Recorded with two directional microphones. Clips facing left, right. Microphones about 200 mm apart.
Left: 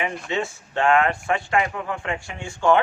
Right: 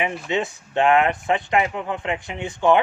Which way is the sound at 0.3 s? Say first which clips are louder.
Right 2 dB; 20° right (ahead or behind).